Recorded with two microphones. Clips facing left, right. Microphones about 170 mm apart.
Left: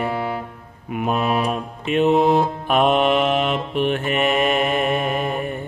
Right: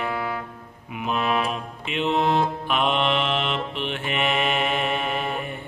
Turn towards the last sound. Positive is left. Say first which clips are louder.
# left 5 dB
turn(degrees=45)  # may be behind; listen again after turning